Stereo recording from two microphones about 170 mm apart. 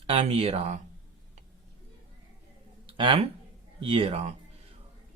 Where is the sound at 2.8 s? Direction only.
30° right (ahead or behind).